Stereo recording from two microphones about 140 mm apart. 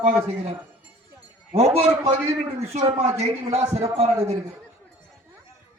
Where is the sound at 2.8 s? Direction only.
45° right (ahead or behind).